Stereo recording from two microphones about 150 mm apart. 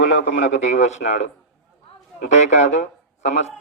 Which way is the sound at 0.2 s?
50° left (ahead or behind).